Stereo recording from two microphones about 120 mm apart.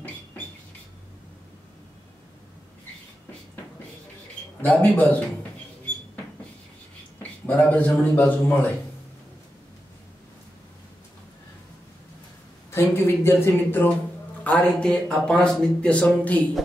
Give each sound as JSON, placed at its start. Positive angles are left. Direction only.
{"t": 4.6, "sound": "speech", "side_deg": 15}
{"t": 7.2, "sound": "a man's voice", "side_deg": 15}
{"t": 12.7, "sound": "speech", "side_deg": 20}